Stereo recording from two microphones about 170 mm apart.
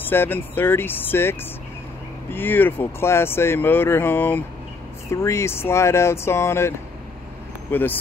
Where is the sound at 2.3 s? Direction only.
10° left (ahead or behind).